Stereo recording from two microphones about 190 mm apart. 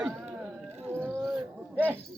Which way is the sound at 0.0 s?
10° right (ahead or behind).